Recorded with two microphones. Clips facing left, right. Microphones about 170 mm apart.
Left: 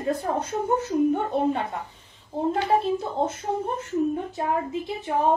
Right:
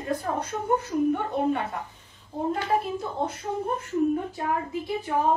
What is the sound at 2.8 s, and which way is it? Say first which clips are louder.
A woman's voice: left 4 dB; 25° left (ahead or behind).